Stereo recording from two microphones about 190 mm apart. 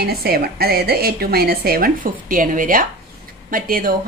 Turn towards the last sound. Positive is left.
turn(degrees=-45)  # may be behind; listen again after turning